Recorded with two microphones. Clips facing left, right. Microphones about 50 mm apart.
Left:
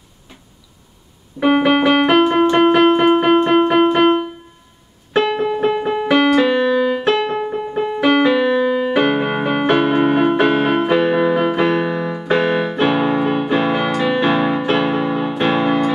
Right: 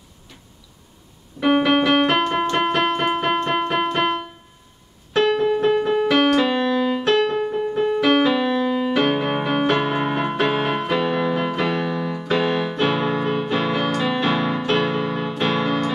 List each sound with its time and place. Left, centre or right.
1.4 s music: centre
5.1 s keyboard: centre
13.9 s music: centre